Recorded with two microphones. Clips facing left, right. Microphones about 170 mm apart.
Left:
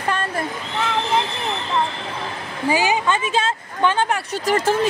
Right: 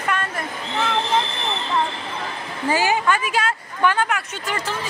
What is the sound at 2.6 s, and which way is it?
Speech, 15° left (ahead or behind).